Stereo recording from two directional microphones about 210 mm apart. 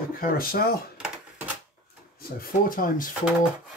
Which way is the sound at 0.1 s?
45° left (ahead or behind).